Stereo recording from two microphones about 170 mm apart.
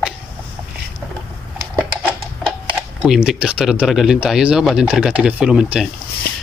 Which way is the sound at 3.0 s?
5° right (ahead or behind).